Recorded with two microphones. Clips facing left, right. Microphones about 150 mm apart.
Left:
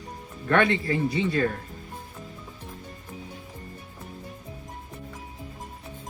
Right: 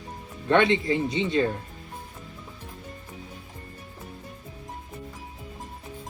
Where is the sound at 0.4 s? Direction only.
20° right (ahead or behind).